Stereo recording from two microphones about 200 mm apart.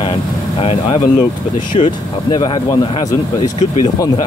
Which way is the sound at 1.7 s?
25° left (ahead or behind).